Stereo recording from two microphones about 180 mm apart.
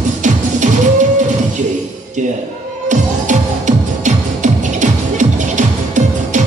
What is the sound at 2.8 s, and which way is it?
Music, 40° right (ahead or behind).